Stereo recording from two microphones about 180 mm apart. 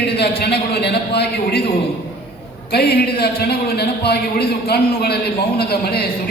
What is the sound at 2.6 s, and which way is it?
A man's voice, 60° left (ahead or behind).